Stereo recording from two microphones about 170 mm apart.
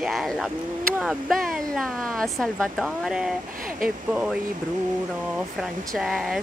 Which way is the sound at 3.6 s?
55° right (ahead or behind).